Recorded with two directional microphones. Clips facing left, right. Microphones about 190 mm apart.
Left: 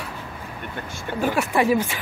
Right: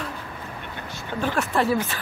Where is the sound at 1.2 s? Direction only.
10° left (ahead or behind).